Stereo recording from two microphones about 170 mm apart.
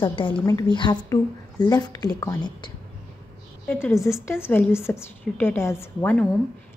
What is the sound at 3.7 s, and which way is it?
A woman's voice, 15° left (ahead or behind).